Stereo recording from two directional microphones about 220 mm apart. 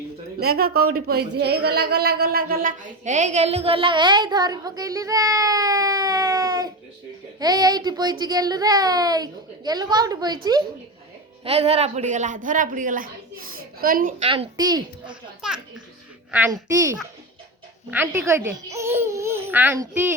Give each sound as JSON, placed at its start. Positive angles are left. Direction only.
{"t": 0.3, "sound": "a woman's voice", "side_deg": -45}
{"t": 14.3, "sound": "speech", "side_deg": -25}
{"t": 15.0, "sound": "a child's voice", "side_deg": -5}